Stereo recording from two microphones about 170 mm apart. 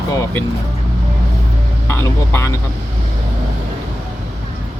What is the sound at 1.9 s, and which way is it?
Speech, 15° left (ahead or behind).